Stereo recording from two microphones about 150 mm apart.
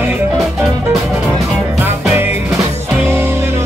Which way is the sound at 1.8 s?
15° right (ahead or behind).